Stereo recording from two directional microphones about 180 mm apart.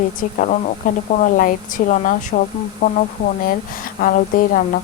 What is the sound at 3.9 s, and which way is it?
Speech, 50° left (ahead or behind).